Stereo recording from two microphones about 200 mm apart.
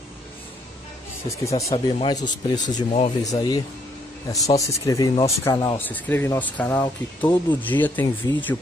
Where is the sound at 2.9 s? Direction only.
35° left (ahead or behind).